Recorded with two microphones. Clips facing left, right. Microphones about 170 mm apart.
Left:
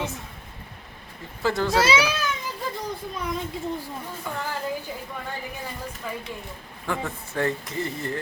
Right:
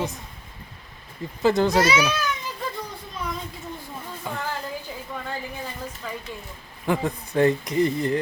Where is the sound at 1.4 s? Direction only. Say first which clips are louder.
Right 3 dB; 20° right (ahead or behind).